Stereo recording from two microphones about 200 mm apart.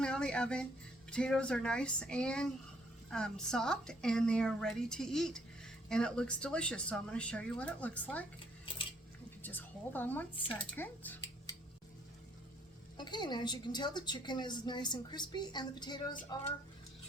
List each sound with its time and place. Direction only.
0.0 s speech: 5° left (ahead or behind)
9.4 s a woman's voice: 10° left (ahead or behind)
13.0 s a woman's voice: 20° left (ahead or behind)